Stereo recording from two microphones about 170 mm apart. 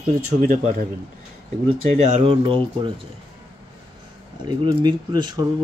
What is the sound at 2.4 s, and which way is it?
Speech, 30° right (ahead or behind).